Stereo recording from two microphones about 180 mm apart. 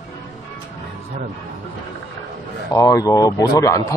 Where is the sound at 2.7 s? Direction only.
20° left (ahead or behind).